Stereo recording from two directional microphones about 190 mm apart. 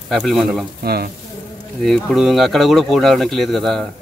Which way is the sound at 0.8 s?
55° right (ahead or behind).